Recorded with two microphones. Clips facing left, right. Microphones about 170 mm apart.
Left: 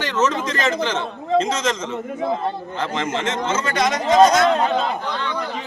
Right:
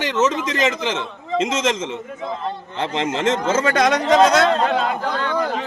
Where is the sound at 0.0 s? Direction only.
20° right (ahead or behind).